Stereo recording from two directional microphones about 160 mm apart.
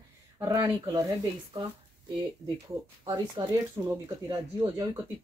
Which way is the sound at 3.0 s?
25° right (ahead or behind).